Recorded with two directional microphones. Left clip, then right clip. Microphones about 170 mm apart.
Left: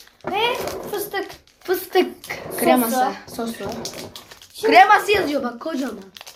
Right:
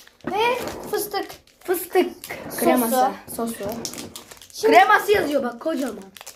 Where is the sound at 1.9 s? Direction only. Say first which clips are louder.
Left 1 dB; 5° left (ahead or behind).